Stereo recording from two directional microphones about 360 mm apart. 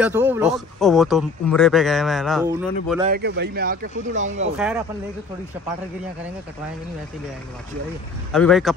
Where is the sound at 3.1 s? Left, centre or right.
Right.